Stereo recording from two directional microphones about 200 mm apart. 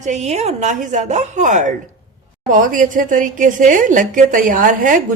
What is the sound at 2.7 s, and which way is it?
A woman's voice, 40° right (ahead or behind).